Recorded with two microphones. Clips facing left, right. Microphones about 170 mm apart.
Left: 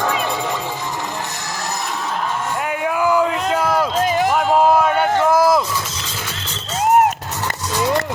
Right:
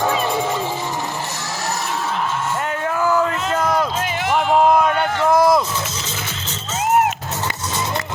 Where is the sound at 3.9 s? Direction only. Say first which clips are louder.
Left 6 dB; 40° left (ahead or behind).